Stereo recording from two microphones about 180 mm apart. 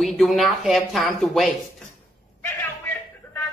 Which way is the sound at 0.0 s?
Centre (ahead or behind).